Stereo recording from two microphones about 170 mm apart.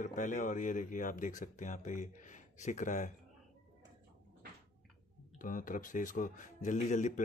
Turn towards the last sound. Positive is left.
turn(degrees=45)  # may be behind; listen again after turning